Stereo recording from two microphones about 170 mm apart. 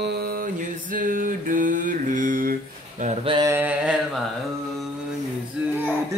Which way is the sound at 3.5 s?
10° right (ahead or behind).